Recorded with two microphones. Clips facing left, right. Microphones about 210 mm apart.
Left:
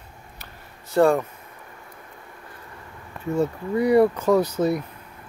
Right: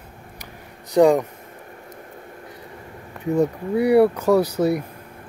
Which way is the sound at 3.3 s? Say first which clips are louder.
Right 3 dB; 15° right (ahead or behind).